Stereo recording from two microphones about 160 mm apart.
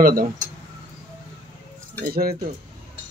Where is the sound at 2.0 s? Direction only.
70° right (ahead or behind).